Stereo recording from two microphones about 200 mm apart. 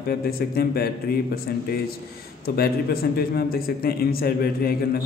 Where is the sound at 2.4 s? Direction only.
50° left (ahead or behind).